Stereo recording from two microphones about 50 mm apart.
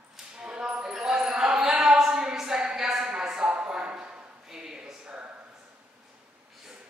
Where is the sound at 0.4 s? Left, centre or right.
Centre.